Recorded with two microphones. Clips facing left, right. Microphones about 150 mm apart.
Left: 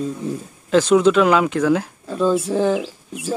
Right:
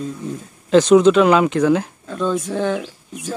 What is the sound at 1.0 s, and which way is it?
Speech, 5° left (ahead or behind).